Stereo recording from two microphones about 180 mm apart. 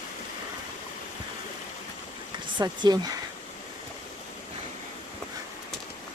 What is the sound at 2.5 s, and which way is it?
Speech, 25° right (ahead or behind).